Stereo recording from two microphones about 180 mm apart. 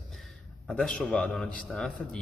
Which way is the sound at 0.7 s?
5° left (ahead or behind).